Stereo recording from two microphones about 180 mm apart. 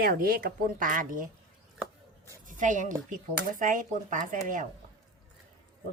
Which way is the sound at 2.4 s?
45° right (ahead or behind).